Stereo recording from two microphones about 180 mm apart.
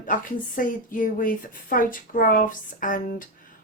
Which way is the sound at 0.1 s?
50° left (ahead or behind).